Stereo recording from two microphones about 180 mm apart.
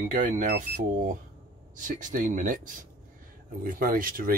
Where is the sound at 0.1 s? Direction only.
50° right (ahead or behind).